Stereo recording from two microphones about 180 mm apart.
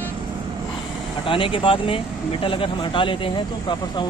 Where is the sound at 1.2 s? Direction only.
30° left (ahead or behind).